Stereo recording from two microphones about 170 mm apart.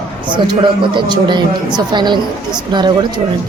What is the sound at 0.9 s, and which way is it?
Speech, 25° right (ahead or behind).